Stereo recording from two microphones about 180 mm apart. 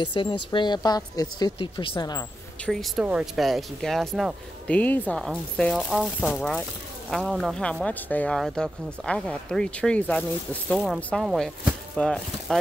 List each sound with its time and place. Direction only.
0.0 s speech: 25° left (ahead or behind)
2.6 s speech: centre (ahead or behind)